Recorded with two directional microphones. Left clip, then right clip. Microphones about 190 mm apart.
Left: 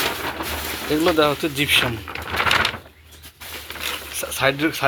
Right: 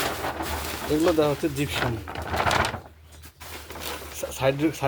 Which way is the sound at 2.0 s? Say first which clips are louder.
Left 4 dB; 60° right (ahead or behind).